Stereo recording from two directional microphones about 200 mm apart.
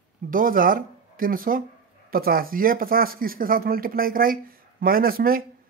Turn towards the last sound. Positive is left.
turn(degrees=-45)  # may be behind; listen again after turning